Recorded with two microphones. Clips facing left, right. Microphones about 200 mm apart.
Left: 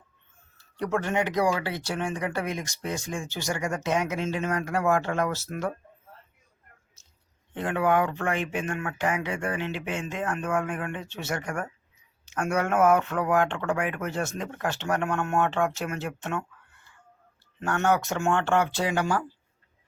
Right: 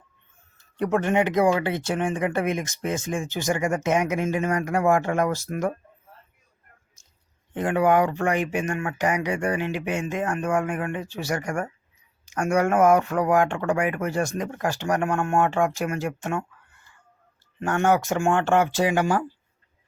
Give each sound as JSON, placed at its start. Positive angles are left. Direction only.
{"t": 0.8, "sound": "speech", "side_deg": -20}
{"t": 7.5, "sound": "speech", "side_deg": -15}
{"t": 17.6, "sound": "speech", "side_deg": -15}